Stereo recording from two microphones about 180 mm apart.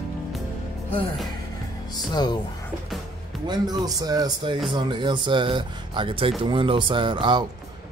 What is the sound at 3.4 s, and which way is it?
Speech, 20° right (ahead or behind).